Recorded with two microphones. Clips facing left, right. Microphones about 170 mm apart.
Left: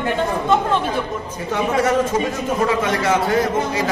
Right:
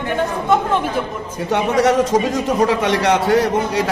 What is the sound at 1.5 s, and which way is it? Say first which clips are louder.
A man's voice: right 3 dB; 70° right (ahead or behind).